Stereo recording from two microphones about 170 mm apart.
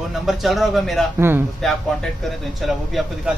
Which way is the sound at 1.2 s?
10° right (ahead or behind).